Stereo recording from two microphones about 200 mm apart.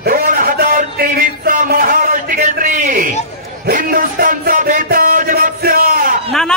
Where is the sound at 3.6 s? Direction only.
45° right (ahead or behind).